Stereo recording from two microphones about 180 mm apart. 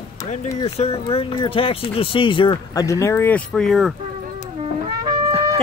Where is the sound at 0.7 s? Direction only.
35° left (ahead or behind); by 3.9 s centre (ahead or behind).